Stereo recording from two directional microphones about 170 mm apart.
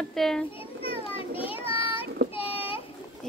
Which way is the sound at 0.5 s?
35° left (ahead or behind).